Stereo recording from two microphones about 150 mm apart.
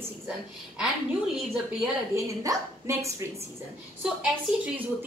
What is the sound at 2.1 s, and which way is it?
Speech, 20° right (ahead or behind).